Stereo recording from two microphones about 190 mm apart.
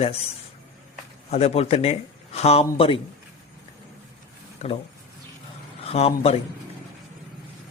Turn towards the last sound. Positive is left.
turn(degrees=30)  # may be behind; listen again after turning